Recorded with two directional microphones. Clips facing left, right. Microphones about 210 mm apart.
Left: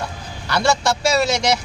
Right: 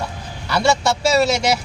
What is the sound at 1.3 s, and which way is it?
Speech, 5° right (ahead or behind).